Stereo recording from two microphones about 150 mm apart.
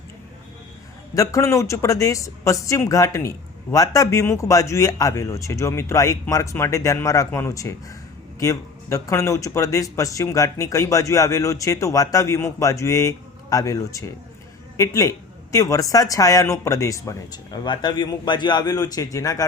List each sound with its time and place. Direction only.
1.1 s speech: 20° left (ahead or behind)